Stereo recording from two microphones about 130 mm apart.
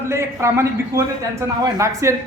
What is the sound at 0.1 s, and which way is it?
A man's voice, 20° right (ahead or behind).